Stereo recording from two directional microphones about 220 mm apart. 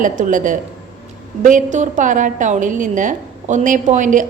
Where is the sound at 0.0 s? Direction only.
35° right (ahead or behind).